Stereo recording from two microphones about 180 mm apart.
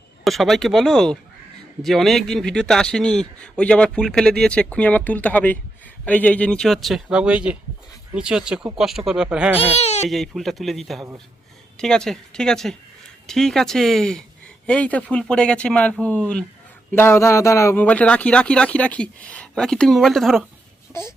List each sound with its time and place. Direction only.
0.3 s a man's voice: centre (ahead or behind)
9.6 s speech: 35° left (ahead or behind)
10.1 s a man's voice: centre (ahead or behind)